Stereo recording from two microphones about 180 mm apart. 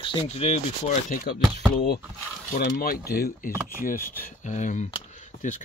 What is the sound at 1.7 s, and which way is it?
Speech, 60° left (ahead or behind).